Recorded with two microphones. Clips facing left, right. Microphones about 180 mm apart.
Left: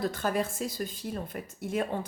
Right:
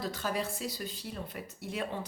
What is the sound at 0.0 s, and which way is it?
Speech, 50° left (ahead or behind).